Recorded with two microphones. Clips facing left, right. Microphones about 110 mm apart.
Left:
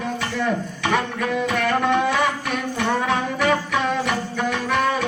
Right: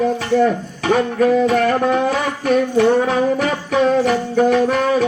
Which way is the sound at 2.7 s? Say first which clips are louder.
Right 4 dB; 35° right (ahead or behind).